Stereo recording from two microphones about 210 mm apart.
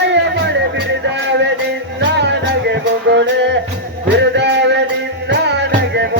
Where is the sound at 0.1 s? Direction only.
55° right (ahead or behind).